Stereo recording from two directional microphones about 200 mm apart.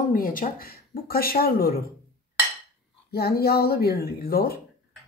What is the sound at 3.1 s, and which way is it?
Speech, 50° left (ahead or behind).